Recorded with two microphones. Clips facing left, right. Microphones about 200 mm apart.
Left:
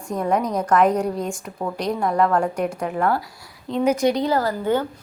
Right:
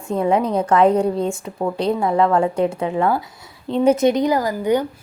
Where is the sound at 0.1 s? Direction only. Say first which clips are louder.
Right 4 dB; 25° right (ahead or behind).